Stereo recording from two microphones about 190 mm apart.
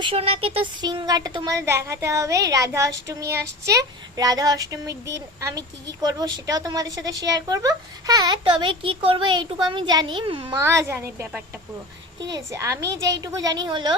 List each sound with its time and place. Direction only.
0.0 s speech: 30° right (ahead or behind)
10.6 s a woman's voice: 15° right (ahead or behind)